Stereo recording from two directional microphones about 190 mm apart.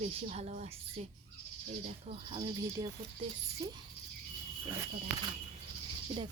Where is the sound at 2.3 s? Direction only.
20° right (ahead or behind).